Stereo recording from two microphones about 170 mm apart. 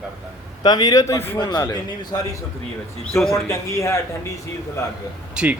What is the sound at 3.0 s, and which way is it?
Speech, centre (ahead or behind).